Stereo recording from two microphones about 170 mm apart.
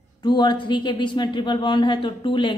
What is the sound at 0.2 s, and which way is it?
Speech, 25° left (ahead or behind).